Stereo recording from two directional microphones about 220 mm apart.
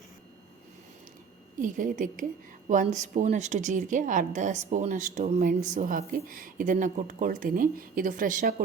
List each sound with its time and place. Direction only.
1.5 s a woman's voice: 35° right (ahead or behind)